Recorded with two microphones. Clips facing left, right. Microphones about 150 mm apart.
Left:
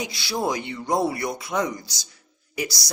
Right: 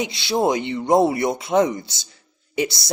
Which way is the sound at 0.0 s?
25° right (ahead or behind).